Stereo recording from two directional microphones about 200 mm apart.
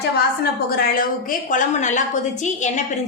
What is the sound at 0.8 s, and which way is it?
A woman's voice, 45° left (ahead or behind).